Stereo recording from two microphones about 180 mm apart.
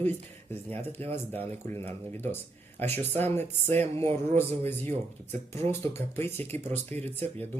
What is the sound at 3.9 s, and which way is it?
Speech, 35° right (ahead or behind).